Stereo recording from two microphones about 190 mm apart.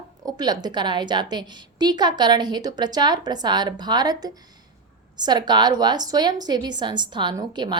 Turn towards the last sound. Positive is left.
turn(degrees=-25)  # may be behind; listen again after turning